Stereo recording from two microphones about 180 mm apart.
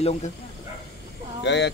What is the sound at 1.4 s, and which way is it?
Speech, 75° left (ahead or behind).